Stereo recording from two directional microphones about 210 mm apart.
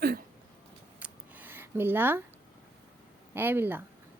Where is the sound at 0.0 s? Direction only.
45° right (ahead or behind).